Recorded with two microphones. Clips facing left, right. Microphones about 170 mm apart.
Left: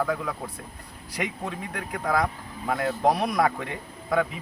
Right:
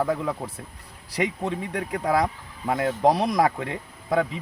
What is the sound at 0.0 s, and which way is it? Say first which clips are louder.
Speech: right 3 dB; 25° right (ahead or behind).